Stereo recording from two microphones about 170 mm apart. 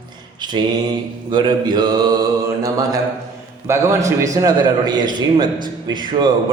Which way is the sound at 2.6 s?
20° right (ahead or behind).